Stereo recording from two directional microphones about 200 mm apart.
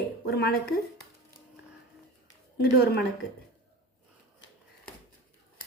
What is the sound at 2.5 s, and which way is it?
Speech, 50° left (ahead or behind).